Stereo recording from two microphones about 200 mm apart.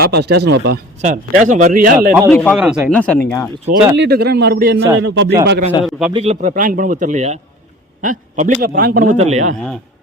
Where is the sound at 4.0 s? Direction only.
55° right (ahead or behind).